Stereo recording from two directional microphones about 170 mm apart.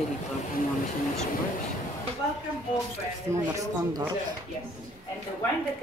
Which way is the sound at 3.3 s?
20° right (ahead or behind).